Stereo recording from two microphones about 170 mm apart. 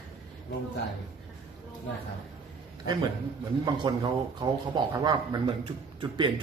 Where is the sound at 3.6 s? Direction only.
25° right (ahead or behind).